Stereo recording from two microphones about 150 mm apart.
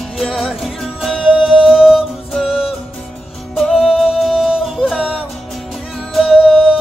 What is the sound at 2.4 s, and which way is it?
Music, 40° left (ahead or behind).